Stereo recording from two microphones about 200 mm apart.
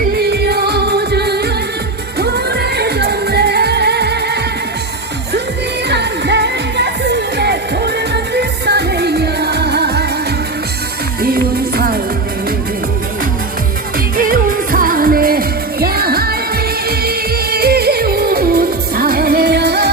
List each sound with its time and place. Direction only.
0.0 s music: 50° right (ahead or behind)
5.9 s music: 60° right (ahead or behind)
11.2 s music: 50° right (ahead or behind)
14.2 s music: 45° right (ahead or behind)